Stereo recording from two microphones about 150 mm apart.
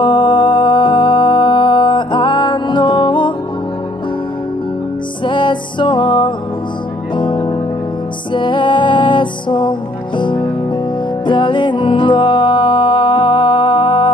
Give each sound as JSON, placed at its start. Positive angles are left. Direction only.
{"t": 0.0, "sound": "music", "side_deg": 35}
{"t": 5.2, "sound": "music", "side_deg": 30}